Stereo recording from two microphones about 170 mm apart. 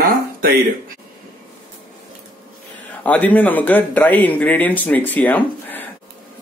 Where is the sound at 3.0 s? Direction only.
10° left (ahead or behind).